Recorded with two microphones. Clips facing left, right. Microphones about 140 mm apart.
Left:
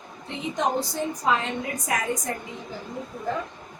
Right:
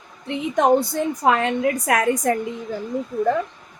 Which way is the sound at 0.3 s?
60° right (ahead or behind).